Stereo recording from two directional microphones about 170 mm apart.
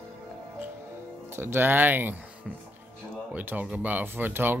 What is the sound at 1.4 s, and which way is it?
Speech, 15° right (ahead or behind).